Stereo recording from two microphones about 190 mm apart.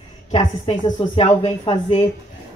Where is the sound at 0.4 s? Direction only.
20° left (ahead or behind).